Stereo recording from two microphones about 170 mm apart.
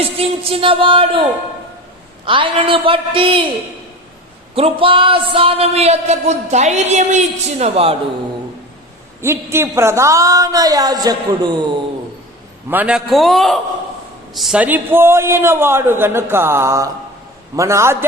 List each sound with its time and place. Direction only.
0.0 s speech: 35° right (ahead or behind)
2.2 s speech: 30° right (ahead or behind)
4.5 s speech: 35° right (ahead or behind)
9.2 s a woman's voice: 15° right (ahead or behind)
12.7 s a man's voice: 5° right (ahead or behind)